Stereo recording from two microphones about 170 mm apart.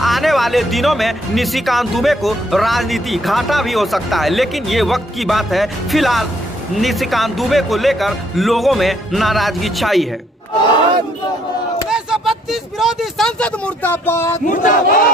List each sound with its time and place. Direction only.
0.0 s speech: centre (ahead or behind)
11.9 s speech: 5° right (ahead or behind); by 14.4 s 15° left (ahead or behind)
14.4 s battle cry: 50° left (ahead or behind)